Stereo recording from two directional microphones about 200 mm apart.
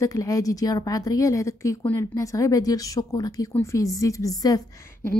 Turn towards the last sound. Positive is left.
turn(degrees=15)  # may be behind; listen again after turning